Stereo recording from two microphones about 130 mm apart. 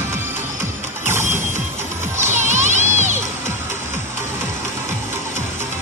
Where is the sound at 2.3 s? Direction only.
65° right (ahead or behind).